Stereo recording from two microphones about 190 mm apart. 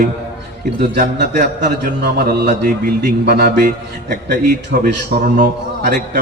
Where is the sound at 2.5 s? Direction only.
50° right (ahead or behind).